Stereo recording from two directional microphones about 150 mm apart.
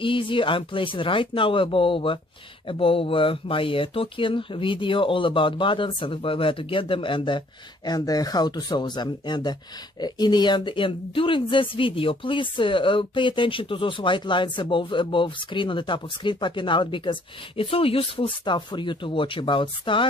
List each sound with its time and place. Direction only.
0.0 s speech: 35° left (ahead or behind)